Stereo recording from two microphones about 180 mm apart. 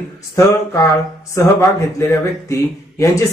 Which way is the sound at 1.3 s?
15° left (ahead or behind).